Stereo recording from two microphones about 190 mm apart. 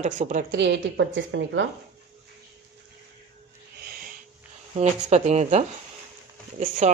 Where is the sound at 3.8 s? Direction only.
50° right (ahead or behind).